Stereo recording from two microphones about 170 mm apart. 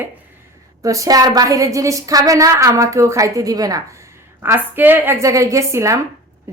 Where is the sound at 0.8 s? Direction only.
20° right (ahead or behind).